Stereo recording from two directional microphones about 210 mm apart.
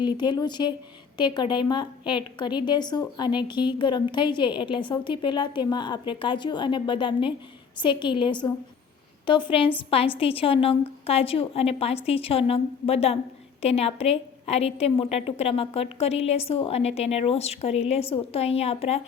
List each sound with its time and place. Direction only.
0.0 s a woman's voice: 20° left (ahead or behind)